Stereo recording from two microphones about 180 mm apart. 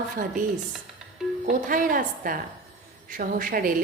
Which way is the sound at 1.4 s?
50° right (ahead or behind).